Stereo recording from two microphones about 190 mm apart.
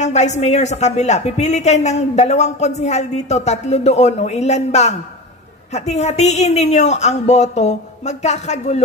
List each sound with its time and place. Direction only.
0.0 s speech: 35° left (ahead or behind)